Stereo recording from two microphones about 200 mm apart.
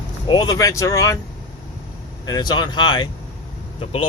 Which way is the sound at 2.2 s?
20° left (ahead or behind).